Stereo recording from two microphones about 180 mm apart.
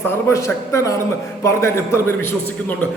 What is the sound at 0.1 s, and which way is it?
A man's voice, 15° left (ahead or behind).